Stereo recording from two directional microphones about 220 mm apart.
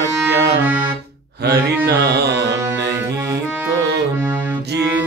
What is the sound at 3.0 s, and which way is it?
Accordion, 15° right (ahead or behind).